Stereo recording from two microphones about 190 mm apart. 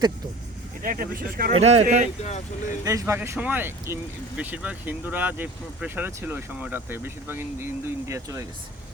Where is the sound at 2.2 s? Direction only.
35° left (ahead or behind).